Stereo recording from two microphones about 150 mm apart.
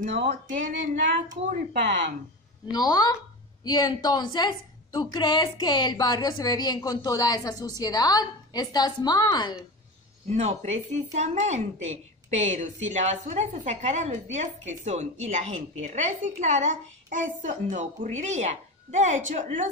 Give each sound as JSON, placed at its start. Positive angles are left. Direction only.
{"t": 0.5, "sound": "speech", "side_deg": -55}
{"t": 2.7, "sound": "a woman's voice", "side_deg": 25}
{"t": 10.3, "sound": "speech", "side_deg": -45}